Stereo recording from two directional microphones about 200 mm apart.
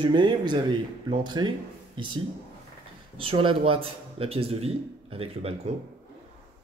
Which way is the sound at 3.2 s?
25° right (ahead or behind).